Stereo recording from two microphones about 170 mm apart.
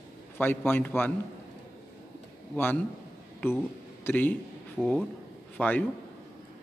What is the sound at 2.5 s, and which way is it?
A man's voice, 10° left (ahead or behind).